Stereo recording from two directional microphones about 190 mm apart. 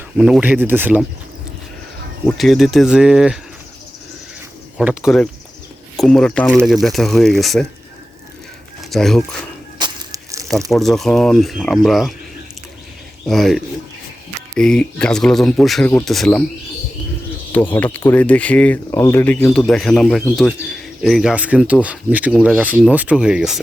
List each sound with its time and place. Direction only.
0.2 s speech: 5° right (ahead or behind)
2.2 s speech: centre (ahead or behind)
4.8 s speech: centre (ahead or behind)
8.8 s speech: centre (ahead or behind)
9.7 s a sound: 20° right (ahead or behind)
10.7 s speech: centre (ahead or behind)
13.2 s speech: centre (ahead or behind)
14.6 s speech: 5° left (ahead or behind)
17.5 s speech: 10° left (ahead or behind)